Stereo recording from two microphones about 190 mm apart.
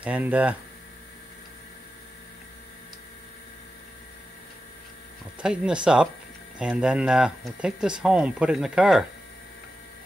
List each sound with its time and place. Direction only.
0.0 s speech: 5° right (ahead or behind)
5.4 s speech: 5° right (ahead or behind)